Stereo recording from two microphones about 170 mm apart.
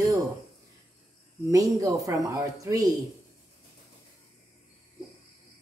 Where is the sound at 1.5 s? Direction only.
20° right (ahead or behind).